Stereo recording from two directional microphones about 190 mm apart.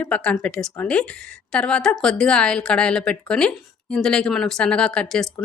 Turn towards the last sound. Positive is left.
turn(degrees=0)  # may be behind; listen again after turning